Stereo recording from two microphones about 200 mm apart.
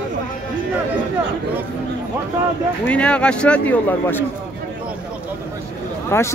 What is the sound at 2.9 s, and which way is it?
A man's voice, 5° left (ahead or behind).